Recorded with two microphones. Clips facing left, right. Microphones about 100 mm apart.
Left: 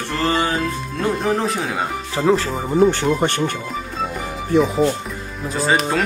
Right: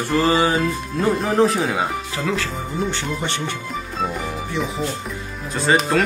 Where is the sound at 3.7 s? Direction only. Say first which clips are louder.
Even; centre (ahead or behind).